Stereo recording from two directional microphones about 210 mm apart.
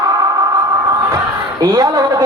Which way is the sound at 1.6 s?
15° right (ahead or behind).